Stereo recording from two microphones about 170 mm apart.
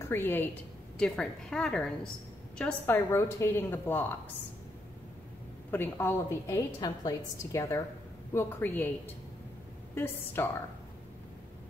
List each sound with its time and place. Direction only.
0.1 s a woman's voice: 10° left (ahead or behind)
5.7 s a woman's voice: 15° left (ahead or behind)